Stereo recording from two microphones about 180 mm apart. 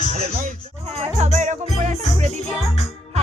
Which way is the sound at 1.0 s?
40° right (ahead or behind).